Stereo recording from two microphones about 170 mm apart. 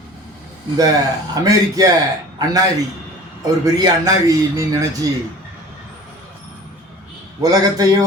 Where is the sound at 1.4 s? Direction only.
20° right (ahead or behind).